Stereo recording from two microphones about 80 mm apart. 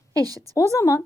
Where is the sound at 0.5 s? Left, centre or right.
Left.